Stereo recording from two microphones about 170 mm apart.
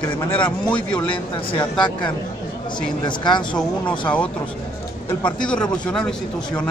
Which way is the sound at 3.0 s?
25° left (ahead or behind).